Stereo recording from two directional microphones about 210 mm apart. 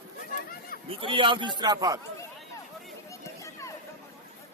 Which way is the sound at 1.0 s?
25° right (ahead or behind).